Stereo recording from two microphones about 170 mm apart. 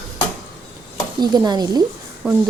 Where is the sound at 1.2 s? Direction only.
25° right (ahead or behind).